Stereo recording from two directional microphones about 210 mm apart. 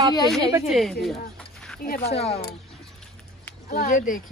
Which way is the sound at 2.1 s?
30° left (ahead or behind).